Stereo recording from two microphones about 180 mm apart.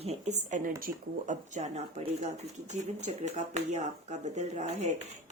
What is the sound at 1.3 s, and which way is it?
Speech, 40° right (ahead or behind).